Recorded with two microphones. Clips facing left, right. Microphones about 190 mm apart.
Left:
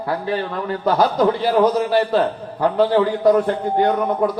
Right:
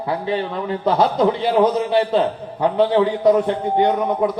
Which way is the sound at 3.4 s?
20° right (ahead or behind).